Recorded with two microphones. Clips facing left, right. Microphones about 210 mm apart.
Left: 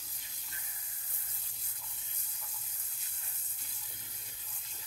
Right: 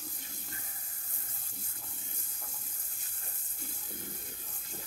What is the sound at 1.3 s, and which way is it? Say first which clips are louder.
Water: right 7 dB; 50° right (ahead or behind).